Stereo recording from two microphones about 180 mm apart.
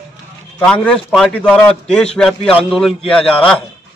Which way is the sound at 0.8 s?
5° left (ahead or behind).